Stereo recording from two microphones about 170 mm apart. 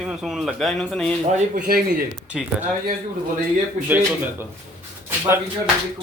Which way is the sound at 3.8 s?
10° right (ahead or behind).